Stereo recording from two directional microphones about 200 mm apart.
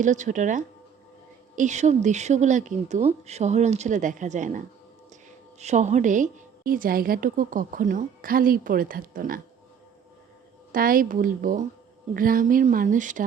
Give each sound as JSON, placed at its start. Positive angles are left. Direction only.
{"t": 0.0, "sound": "a woman's voice", "side_deg": -40}
{"t": 10.7, "sound": "a woman's voice", "side_deg": -45}